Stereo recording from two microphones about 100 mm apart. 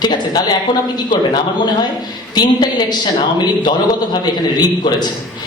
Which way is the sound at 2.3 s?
45° left (ahead or behind).